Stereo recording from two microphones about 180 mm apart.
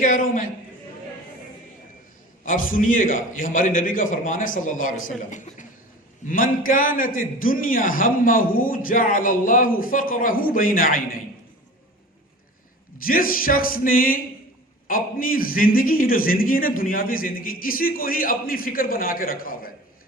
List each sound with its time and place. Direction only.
0.0 s a man's voice: 45° left (ahead or behind)
2.4 s a man's voice: 50° left (ahead or behind)
13.0 s a man's voice: 50° left (ahead or behind)